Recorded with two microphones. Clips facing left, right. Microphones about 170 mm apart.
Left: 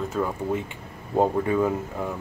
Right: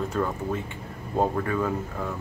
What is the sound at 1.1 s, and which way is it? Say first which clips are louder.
Speech: left 4 dB; 20° left (ahead or behind).